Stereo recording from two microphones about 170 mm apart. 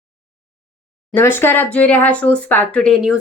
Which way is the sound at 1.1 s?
15° left (ahead or behind).